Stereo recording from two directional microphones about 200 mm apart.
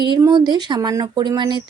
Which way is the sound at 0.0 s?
20° right (ahead or behind).